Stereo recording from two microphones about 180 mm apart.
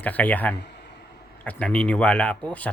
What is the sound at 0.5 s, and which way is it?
Speech, 65° left (ahead or behind).